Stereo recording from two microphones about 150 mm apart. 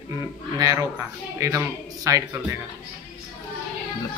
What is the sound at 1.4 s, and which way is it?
Speech, 20° right (ahead or behind).